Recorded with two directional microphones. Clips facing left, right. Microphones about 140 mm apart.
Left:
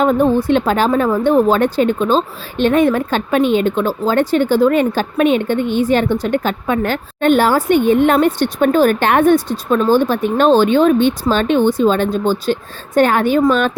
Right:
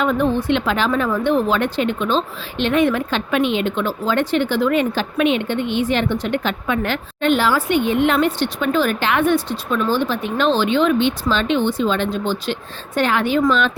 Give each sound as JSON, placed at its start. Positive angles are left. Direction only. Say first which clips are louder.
{"t": 0.0, "sound": "speech", "louder": "left 5 dB", "side_deg": 40}